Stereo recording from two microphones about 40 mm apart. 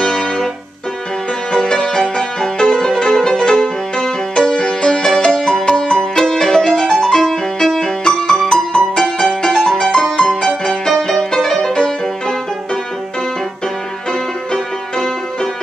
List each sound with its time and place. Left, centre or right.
0.0 s music: centre
1.7 s music: centre
4.6 s music: left